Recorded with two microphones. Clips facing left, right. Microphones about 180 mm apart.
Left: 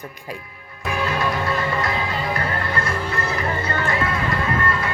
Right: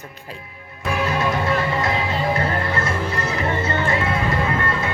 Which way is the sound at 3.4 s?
25° right (ahead or behind).